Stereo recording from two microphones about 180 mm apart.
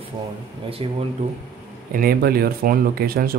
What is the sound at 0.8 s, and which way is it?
Speech, 30° right (ahead or behind).